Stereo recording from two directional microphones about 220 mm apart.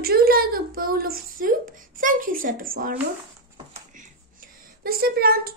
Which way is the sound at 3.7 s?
35° right (ahead or behind).